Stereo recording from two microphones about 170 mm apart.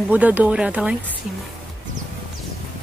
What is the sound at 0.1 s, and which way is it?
Speech, 10° right (ahead or behind).